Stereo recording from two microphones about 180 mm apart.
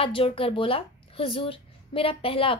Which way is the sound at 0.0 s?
30° left (ahead or behind).